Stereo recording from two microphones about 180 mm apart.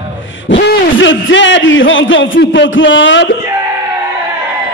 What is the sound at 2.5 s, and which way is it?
Speech, 90° left.